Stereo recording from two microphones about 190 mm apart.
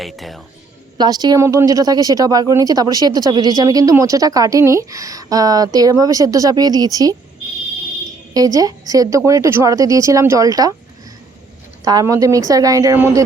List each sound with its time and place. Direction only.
0.0 s speech: centre (ahead or behind)
0.9 s speech: 20° right (ahead or behind)
8.3 s speech: 20° right (ahead or behind)
11.9 s speech: 20° right (ahead or behind)